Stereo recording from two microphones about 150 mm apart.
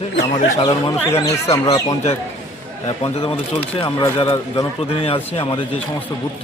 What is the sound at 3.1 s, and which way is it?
Speech, 40° left (ahead or behind).